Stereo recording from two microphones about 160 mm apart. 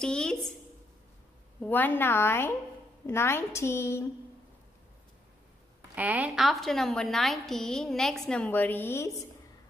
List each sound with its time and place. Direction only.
0.0 s a woman's voice: 5° left (ahead or behind)
1.6 s a woman's voice: 10° left (ahead or behind)
5.9 s a woman's voice: 10° right (ahead or behind); by 9.1 s 15° left (ahead or behind)